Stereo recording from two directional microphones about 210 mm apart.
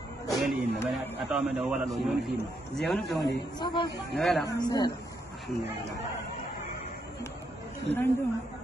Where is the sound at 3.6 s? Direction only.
20° left (ahead or behind).